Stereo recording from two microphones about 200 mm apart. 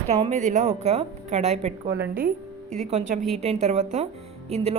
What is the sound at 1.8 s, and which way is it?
Speech, 55° right (ahead or behind).